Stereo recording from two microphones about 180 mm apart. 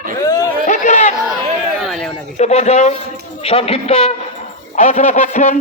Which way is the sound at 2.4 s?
35° left (ahead or behind).